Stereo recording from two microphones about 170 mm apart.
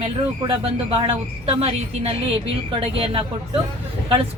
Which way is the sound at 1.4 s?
35° right (ahead or behind).